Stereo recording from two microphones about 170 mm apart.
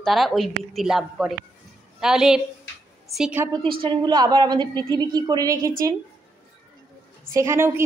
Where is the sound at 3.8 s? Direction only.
25° right (ahead or behind).